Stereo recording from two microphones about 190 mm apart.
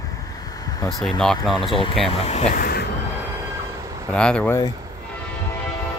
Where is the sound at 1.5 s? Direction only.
25° left (ahead or behind).